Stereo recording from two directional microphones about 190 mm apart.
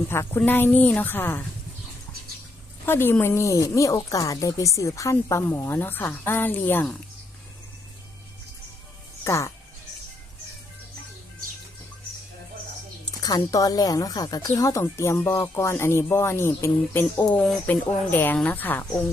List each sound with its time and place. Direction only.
0.1 s speech: 10° left (ahead or behind)
2.8 s speech: 10° left (ahead or behind)
9.2 s speech: 15° left (ahead or behind)
13.2 s speech: 20° left (ahead or behind)